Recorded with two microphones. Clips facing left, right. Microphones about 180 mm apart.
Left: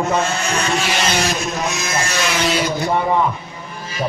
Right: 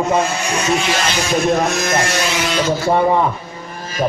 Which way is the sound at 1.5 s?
55° right (ahead or behind).